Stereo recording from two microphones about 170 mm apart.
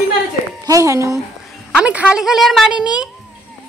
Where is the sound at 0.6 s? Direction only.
20° right (ahead or behind).